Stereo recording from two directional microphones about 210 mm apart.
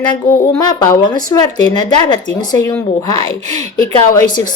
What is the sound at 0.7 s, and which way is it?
Speech, 20° left (ahead or behind).